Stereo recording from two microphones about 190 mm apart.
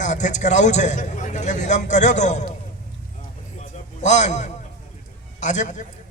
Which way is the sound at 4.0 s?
40° left (ahead or behind).